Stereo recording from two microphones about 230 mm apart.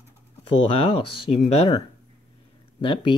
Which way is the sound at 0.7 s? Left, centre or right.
Left.